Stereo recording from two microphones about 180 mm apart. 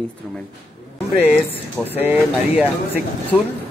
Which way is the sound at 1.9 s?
10° right (ahead or behind).